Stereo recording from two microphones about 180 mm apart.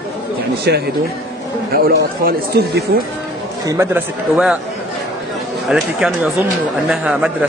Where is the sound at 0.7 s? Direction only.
65° right (ahead or behind).